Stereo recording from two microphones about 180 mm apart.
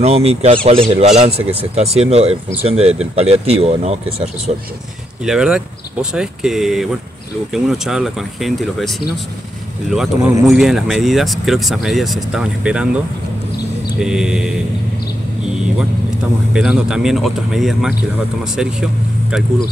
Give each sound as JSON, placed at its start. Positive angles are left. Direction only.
{"t": 0.0, "sound": "a man's voice", "side_deg": -35}
{"t": 5.2, "sound": "speech", "side_deg": -5}
{"t": 16.5, "sound": "speech", "side_deg": -5}